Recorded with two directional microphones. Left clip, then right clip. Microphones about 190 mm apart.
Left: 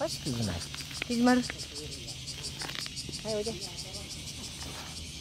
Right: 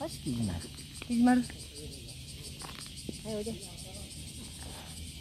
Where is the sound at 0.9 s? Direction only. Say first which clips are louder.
Left 1 dB; 45° left (ahead or behind).